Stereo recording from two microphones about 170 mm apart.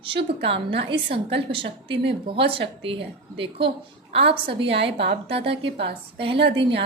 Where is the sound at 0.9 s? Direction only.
35° right (ahead or behind).